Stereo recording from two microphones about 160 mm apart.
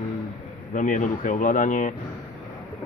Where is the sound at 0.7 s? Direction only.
55° left (ahead or behind).